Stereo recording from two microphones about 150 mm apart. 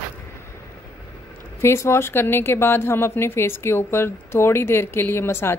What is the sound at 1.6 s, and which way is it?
Speech, 15° left (ahead or behind).